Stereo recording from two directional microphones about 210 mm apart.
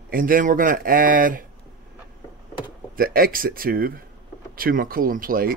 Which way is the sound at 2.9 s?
45° right (ahead or behind).